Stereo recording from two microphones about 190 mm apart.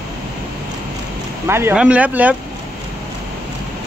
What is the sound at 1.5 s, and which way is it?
Speech, 10° right (ahead or behind).